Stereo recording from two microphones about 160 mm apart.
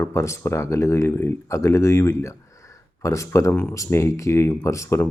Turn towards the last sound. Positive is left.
turn(degrees=15)  # may be behind; listen again after turning